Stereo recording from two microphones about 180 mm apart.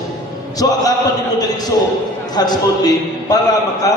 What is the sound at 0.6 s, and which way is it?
Speech, 20° left (ahead or behind).